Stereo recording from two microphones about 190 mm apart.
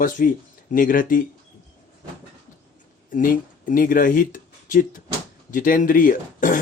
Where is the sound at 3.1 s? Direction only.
45° left (ahead or behind).